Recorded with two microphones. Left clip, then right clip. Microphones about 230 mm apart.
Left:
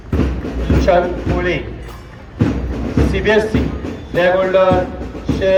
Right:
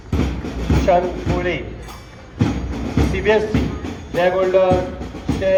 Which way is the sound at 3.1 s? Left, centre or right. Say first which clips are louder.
Left 2 dB; left.